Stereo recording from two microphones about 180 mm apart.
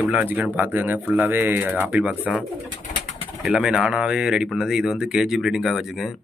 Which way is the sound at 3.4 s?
5° right (ahead or behind).